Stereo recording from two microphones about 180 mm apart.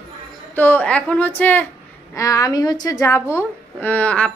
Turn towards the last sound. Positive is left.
turn(degrees=10)  # may be behind; listen again after turning